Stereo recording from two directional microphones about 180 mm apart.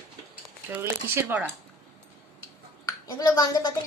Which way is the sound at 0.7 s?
10° right (ahead or behind).